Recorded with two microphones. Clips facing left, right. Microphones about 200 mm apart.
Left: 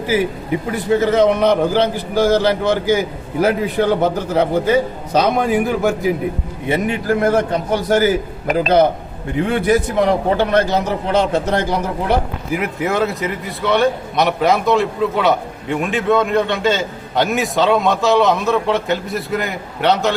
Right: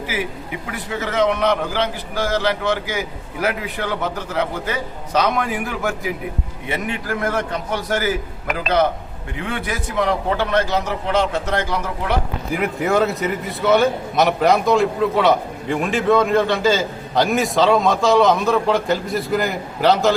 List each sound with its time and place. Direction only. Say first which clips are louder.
0.1 s a man's voice: left 11 dB; 35° left (ahead or behind)
6.7 s a man's voice: left 7 dB; 35° left (ahead or behind)
12.5 s a man's voice: right 1 dB; centre (ahead or behind)